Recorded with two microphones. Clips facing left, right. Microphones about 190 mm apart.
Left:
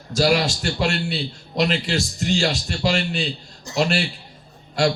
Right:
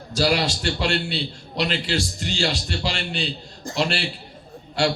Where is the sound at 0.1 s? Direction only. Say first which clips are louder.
Left 2 dB; 45° left (ahead or behind).